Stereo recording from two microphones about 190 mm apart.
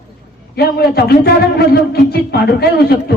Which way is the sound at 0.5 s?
55° left (ahead or behind).